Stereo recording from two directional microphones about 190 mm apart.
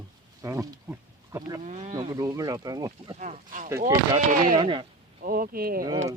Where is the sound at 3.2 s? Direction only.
40° right (ahead or behind).